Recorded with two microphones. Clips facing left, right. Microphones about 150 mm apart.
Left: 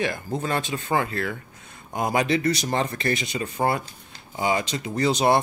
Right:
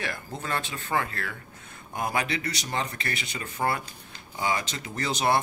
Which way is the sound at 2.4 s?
35° left (ahead or behind).